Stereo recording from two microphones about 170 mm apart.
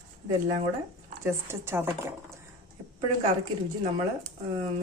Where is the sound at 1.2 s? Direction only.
15° right (ahead or behind).